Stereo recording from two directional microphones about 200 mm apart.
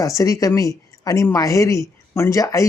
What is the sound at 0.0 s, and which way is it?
A man's voice, 15° left (ahead or behind).